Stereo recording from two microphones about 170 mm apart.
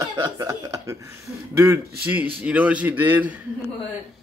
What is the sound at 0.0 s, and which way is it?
A man's voice, 20° right (ahead or behind).